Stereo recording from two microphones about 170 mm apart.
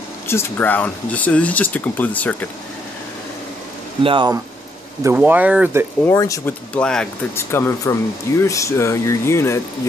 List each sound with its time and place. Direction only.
0.3 s speech: 10° left (ahead or behind)
4.0 s speech: 30° right (ahead or behind)
5.0 s speech: 10° right (ahead or behind)
6.0 s speech: 20° left (ahead or behind)
6.7 s speech: 5° left (ahead or behind)